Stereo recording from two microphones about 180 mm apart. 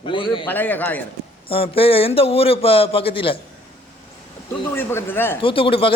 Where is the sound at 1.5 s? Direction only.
30° left (ahead or behind).